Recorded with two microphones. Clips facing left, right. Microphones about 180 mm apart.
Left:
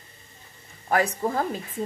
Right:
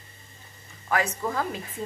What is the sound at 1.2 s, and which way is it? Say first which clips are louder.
Speech: left 3 dB; 35° left (ahead or behind).